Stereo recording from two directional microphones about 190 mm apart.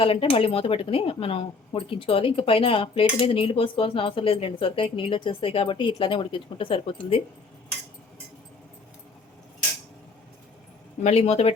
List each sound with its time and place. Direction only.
0.0 s speech: 30° left (ahead or behind)
11.0 s speech: 35° left (ahead or behind)